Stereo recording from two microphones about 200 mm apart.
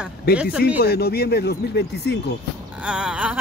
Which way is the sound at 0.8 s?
50° left (ahead or behind).